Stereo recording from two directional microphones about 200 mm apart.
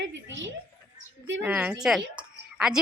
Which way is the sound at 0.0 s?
65° right (ahead or behind).